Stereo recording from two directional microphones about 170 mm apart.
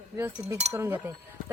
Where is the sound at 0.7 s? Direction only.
15° right (ahead or behind).